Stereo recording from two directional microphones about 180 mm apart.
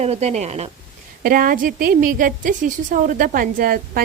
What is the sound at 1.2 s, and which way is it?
A woman's voice, 50° right (ahead or behind).